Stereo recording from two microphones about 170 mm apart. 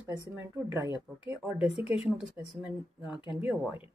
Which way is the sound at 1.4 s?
Centre (ahead or behind).